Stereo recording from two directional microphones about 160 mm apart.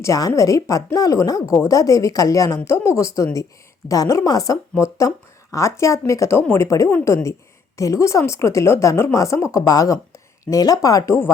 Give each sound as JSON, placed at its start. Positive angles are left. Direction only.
{"t": 0.0, "sound": "speech", "side_deg": 20}